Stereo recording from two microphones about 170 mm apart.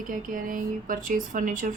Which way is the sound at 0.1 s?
55° right (ahead or behind).